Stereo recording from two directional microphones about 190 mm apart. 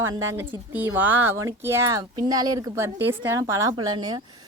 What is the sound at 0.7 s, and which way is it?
Speech, 10° right (ahead or behind).